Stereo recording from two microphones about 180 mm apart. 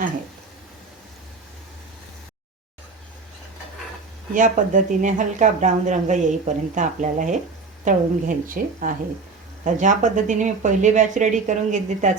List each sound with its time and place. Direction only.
4.4 s speech: 45° right (ahead or behind)